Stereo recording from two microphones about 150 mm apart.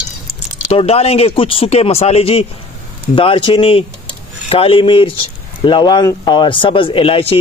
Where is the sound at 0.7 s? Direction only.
40° left (ahead or behind).